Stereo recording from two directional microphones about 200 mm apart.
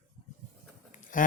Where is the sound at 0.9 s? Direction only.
40° left (ahead or behind).